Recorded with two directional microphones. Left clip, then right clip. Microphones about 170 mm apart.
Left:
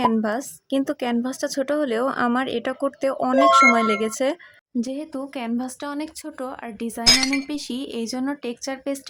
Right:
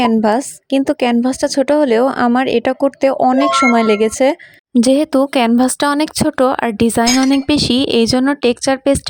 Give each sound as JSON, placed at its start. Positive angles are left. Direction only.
{"t": 0.2, "sound": "a woman's voice", "side_deg": -40}
{"t": 4.7, "sound": "speech", "side_deg": -70}
{"t": 7.0, "sound": "speech", "side_deg": 0}
{"t": 7.4, "sound": "speech", "side_deg": -60}